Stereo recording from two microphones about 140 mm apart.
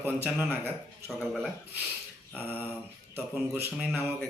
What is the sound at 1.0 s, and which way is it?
Speech, centre (ahead or behind).